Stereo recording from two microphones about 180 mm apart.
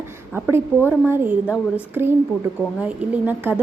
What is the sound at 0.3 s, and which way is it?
A woman's voice, 10° right (ahead or behind).